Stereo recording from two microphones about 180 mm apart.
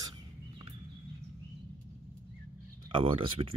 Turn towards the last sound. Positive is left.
turn(degrees=-30)  # may be behind; listen again after turning